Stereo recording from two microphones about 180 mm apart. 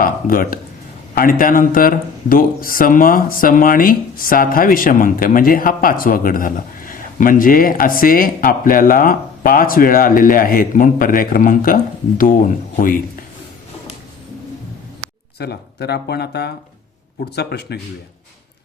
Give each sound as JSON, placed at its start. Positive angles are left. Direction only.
{"t": 0.0, "sound": "speech", "side_deg": 50}
{"t": 15.4, "sound": "speech", "side_deg": 65}